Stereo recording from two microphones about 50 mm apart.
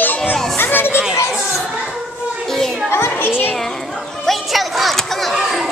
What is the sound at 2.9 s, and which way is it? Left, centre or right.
Children playing, left.